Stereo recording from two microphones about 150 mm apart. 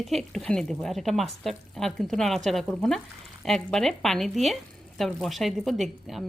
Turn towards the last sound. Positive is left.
turn(degrees=0)  # may be behind; listen again after turning